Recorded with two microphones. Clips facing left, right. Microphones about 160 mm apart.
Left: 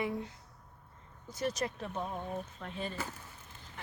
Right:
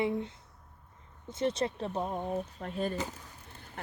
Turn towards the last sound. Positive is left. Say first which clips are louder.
# right 5 dB
turn(degrees=-60)  # may be behind; listen again after turning